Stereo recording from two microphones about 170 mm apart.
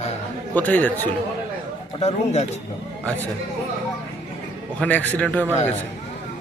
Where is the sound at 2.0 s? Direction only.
40° left (ahead or behind).